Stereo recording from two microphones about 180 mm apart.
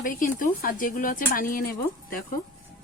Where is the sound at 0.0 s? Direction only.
50° left (ahead or behind).